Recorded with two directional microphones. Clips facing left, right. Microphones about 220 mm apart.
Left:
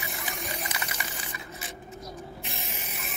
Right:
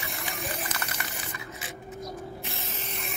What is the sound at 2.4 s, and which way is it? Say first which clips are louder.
Spray: right 1 dB; 15° left (ahead or behind).